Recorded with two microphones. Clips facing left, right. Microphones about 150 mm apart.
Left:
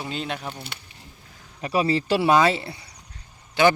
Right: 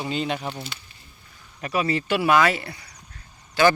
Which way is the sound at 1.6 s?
30° left (ahead or behind).